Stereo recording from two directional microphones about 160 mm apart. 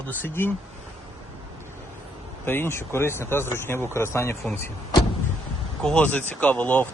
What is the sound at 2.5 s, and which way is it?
Speech, 15° left (ahead or behind).